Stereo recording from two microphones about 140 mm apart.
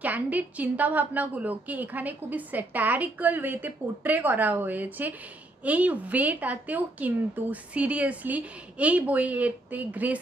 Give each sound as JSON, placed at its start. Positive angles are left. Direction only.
{"t": 0.0, "sound": "a woman's voice", "side_deg": -10}